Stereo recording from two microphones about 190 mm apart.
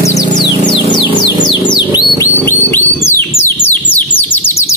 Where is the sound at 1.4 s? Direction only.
25° left (ahead or behind).